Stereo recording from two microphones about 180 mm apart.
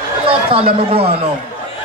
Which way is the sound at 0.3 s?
30° right (ahead or behind).